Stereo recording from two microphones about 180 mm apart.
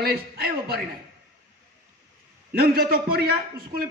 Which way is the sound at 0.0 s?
60° right (ahead or behind).